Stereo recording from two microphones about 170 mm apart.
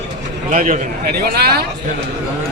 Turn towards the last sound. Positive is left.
turn(degrees=-65)  # may be behind; listen again after turning